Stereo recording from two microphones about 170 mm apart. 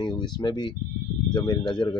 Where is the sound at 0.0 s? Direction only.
25° left (ahead or behind).